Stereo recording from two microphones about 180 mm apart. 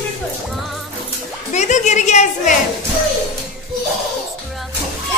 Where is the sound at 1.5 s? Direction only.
40° left (ahead or behind).